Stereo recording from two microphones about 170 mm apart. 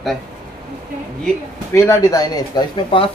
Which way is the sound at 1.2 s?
15° left (ahead or behind).